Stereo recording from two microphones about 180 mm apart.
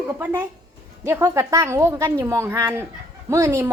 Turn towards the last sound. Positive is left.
turn(degrees=-15)  # may be behind; listen again after turning